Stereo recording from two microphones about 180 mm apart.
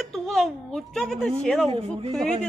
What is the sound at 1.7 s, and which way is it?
Speech, 30° right (ahead or behind).